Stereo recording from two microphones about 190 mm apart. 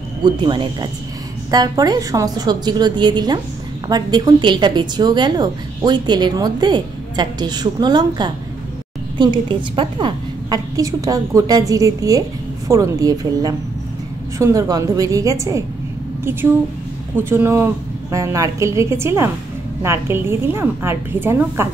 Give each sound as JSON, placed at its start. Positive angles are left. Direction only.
{"t": 0.2, "sound": "a woman's voice", "side_deg": -25}
{"t": 17.2, "sound": "a woman's voice", "side_deg": -10}